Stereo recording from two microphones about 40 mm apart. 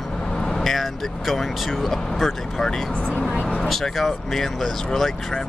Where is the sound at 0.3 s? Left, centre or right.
Centre.